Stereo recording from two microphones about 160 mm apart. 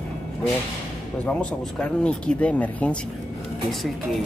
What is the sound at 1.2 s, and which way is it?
Speech, 5° left (ahead or behind).